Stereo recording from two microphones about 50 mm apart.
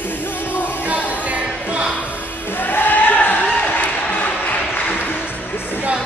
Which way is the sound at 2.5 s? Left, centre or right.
Left.